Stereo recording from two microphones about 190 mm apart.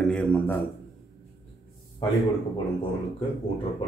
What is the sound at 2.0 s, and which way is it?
Speech, 25° left (ahead or behind).